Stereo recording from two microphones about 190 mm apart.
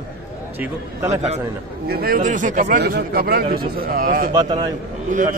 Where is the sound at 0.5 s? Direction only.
15° right (ahead or behind).